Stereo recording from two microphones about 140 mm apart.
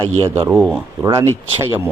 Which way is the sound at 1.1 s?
25° right (ahead or behind).